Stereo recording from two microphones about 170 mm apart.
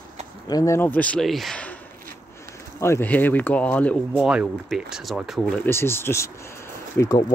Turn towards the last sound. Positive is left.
turn(degrees=25)  # may be behind; listen again after turning